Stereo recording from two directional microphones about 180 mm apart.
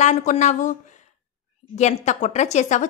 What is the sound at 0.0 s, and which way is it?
Speech, 40° left (ahead or behind).